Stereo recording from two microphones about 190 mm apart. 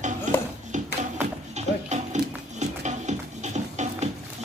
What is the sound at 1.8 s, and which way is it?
Music, 40° right (ahead or behind).